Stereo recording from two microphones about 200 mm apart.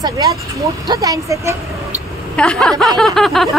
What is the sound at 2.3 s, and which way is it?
Speech, 5° left (ahead or behind).